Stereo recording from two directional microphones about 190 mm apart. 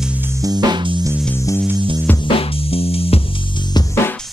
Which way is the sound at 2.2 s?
30° left (ahead or behind).